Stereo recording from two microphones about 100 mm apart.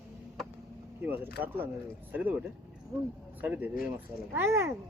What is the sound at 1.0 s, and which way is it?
Speech, 20° right (ahead or behind).